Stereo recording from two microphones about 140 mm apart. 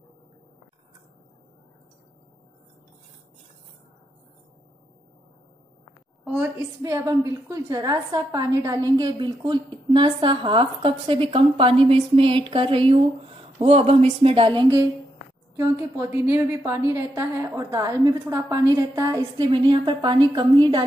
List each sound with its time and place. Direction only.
6.2 s a woman's voice: 15° right (ahead or behind); by 14.8 s 35° right (ahead or behind)
15.5 s a woman's voice: 20° right (ahead or behind)